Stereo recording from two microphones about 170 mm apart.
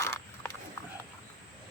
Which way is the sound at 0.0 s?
15° left (ahead or behind).